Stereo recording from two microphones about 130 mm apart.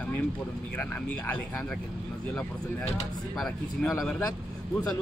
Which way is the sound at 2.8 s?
55° left (ahead or behind).